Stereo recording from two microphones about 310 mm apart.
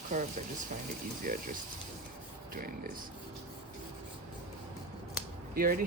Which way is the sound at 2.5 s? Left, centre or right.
Right.